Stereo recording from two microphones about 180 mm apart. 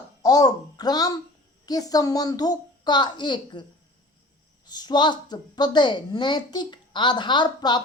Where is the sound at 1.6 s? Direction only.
20° left (ahead or behind).